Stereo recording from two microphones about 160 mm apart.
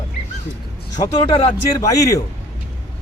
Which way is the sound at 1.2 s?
40° left (ahead or behind).